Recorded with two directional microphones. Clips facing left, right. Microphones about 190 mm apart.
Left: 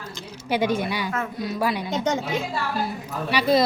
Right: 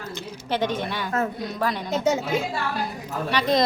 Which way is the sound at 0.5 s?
10° left (ahead or behind).